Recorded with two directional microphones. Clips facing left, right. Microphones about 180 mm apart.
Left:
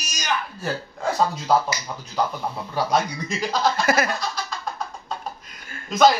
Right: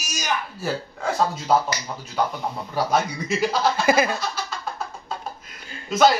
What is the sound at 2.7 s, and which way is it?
Speech, 5° right (ahead or behind).